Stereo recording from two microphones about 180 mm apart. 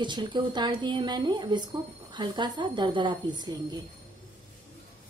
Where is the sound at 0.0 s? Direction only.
25° right (ahead or behind).